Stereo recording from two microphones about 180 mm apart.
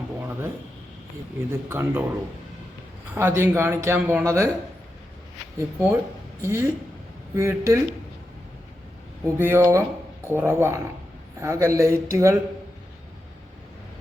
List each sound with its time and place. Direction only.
1.5 s speech: 15° right (ahead or behind)
3.2 s speech: 15° right (ahead or behind)
5.5 s speech: 10° right (ahead or behind)
9.2 s speech: 15° right (ahead or behind)